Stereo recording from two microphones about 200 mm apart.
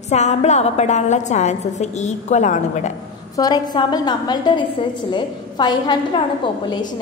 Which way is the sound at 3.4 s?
20° left (ahead or behind).